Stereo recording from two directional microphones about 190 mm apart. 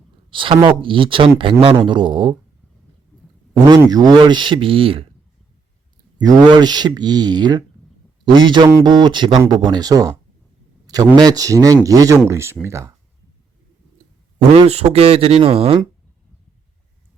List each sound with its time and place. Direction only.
0.3 s speech: 25° right (ahead or behind)
3.7 s speech: 20° right (ahead or behind)
6.1 s speech: 20° right (ahead or behind)
14.3 s a man's voice: 30° right (ahead or behind)